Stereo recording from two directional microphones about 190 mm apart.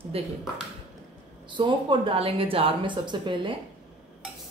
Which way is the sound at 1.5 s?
25° right (ahead or behind).